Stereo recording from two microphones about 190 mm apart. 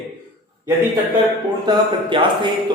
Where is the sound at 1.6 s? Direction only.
25° right (ahead or behind).